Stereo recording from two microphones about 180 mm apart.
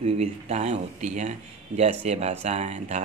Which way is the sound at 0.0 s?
35° right (ahead or behind).